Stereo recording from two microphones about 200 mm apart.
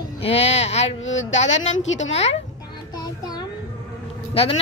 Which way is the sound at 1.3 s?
35° left (ahead or behind).